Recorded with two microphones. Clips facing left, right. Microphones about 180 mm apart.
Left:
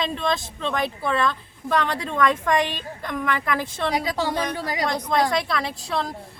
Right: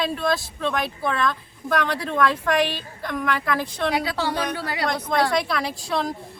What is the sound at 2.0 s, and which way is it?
A woman's voice, 20° left (ahead or behind).